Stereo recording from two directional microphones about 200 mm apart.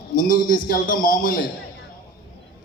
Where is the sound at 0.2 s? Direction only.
45° left (ahead or behind).